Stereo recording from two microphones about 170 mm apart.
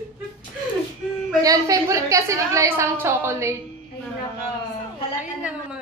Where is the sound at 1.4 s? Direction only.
20° right (ahead or behind).